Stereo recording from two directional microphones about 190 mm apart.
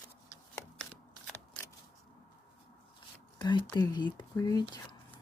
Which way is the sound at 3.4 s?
25° left (ahead or behind).